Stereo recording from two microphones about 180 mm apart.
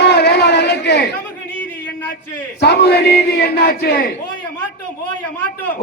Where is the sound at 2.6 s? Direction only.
70° left (ahead or behind).